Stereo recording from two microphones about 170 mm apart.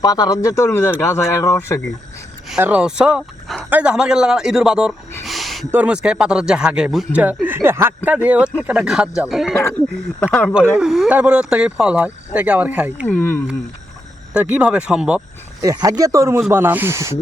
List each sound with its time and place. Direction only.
0.0 s speech: 20° left (ahead or behind)
2.6 s speech: 10° right (ahead or behind)
5.2 s a sound: centre (ahead or behind)
5.7 s speech: 5° right (ahead or behind)
9.6 s speech: 10° left (ahead or behind)
10.8 s speech: centre (ahead or behind)
13.1 s speech: 10° left (ahead or behind)
14.3 s speech: 10° right (ahead or behind)
15.6 s speech: 20° right (ahead or behind)